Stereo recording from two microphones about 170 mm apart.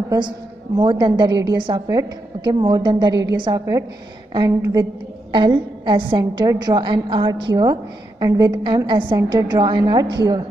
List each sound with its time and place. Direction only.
0.7 s a woman's voice: 25° right (ahead or behind)
5.3 s a woman's voice: 30° right (ahead or behind)